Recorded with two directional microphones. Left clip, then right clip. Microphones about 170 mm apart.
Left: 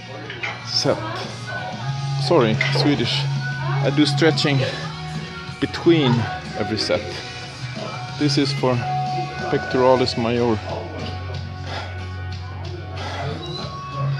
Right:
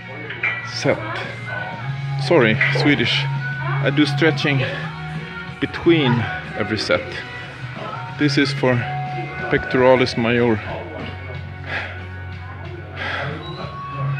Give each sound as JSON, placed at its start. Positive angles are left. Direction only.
{"t": 0.8, "sound": "music", "side_deg": -30}
{"t": 2.1, "sound": "speech", "side_deg": -5}
{"t": 8.2, "sound": "speech", "side_deg": -5}